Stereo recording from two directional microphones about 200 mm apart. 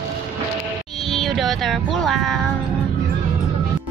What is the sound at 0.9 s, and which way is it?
Speech, centre (ahead or behind).